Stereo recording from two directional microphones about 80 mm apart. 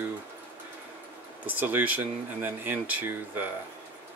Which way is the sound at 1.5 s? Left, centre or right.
Right.